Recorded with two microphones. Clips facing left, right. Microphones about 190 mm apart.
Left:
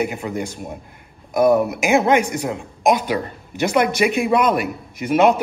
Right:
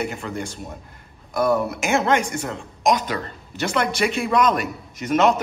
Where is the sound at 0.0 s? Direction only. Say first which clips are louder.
Left 4 dB; 15° left (ahead or behind).